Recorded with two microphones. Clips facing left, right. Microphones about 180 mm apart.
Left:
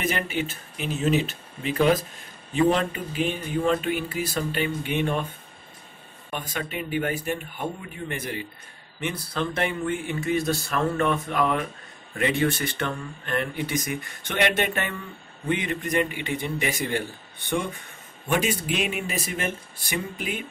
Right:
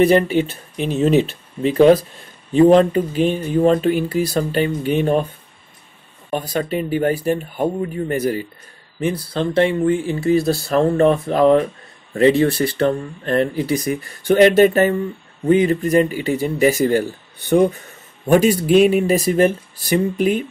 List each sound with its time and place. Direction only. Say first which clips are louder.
0.0 s speech: right 13 dB; 40° right (ahead or behind)
6.3 s speech: right 10 dB; 35° right (ahead or behind)
18.3 s speech: right 12 dB; 40° right (ahead or behind)